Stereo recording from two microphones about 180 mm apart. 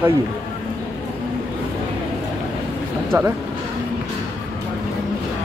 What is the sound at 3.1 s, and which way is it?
Speech, 10° right (ahead or behind).